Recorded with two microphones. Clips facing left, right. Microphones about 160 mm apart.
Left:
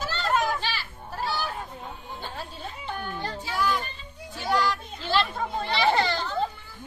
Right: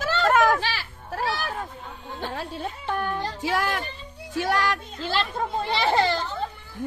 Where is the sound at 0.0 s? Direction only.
90° right.